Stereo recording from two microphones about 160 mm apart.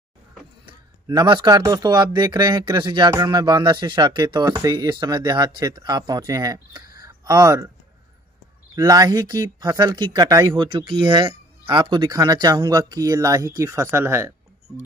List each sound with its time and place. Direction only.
0.7 s speech: 25° right (ahead or behind)
7.0 s a sound: 20° right (ahead or behind)
8.7 s speech: 25° right (ahead or behind)